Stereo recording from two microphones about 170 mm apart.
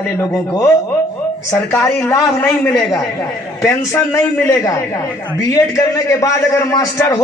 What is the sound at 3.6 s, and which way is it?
A man's voice, 15° left (ahead or behind).